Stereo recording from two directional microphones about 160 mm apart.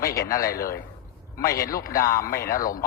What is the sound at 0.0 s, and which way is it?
Speech, 65° left (ahead or behind).